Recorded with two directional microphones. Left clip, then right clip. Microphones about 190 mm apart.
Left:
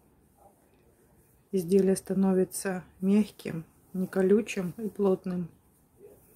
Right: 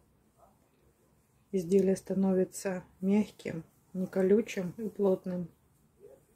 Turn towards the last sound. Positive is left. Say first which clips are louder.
# left 2 dB
turn(degrees=25)  # may be behind; listen again after turning